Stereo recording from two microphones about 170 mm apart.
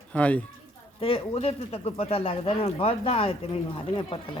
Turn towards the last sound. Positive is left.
turn(degrees=30)  # may be behind; listen again after turning